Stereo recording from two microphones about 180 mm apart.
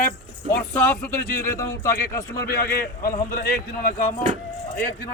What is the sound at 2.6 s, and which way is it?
A man's voice, 60° left (ahead or behind).